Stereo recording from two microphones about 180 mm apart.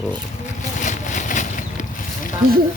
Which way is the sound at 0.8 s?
45° left (ahead or behind).